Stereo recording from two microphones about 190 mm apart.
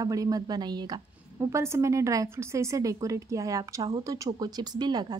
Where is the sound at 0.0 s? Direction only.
20° right (ahead or behind).